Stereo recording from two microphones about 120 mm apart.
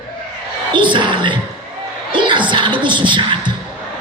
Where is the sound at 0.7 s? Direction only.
40° right (ahead or behind).